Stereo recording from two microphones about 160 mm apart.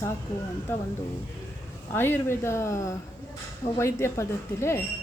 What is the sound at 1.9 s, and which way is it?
A woman's voice, 15° left (ahead or behind).